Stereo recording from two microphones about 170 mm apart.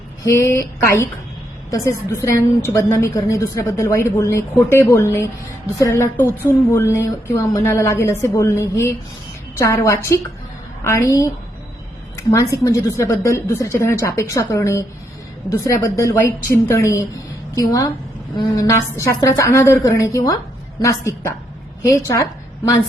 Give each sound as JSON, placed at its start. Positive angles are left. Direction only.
{"t": 0.3, "sound": "a woman's voice", "side_deg": 15}
{"t": 12.1, "sound": "a sound", "side_deg": 15}
{"t": 12.6, "sound": "a woman's voice", "side_deg": 20}